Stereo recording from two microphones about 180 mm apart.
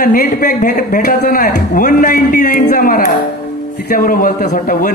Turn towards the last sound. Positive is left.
turn(degrees=50)  # may be behind; listen again after turning